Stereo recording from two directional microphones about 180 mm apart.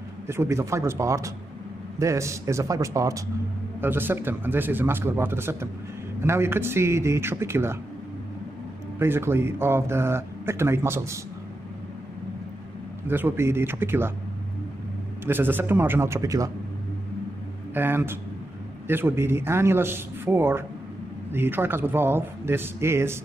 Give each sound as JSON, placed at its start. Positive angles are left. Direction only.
{"t": 0.3, "sound": "speech", "side_deg": -15}
{"t": 9.0, "sound": "speech", "side_deg": -15}
{"t": 13.0, "sound": "speech", "side_deg": -10}
{"t": 15.2, "sound": "speech", "side_deg": -10}
{"t": 17.7, "sound": "speech", "side_deg": -10}